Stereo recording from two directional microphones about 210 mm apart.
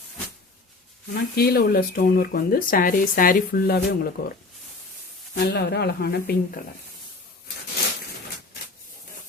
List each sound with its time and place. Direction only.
1.1 s speech: 50° left (ahead or behind)
5.4 s speech: 50° left (ahead or behind)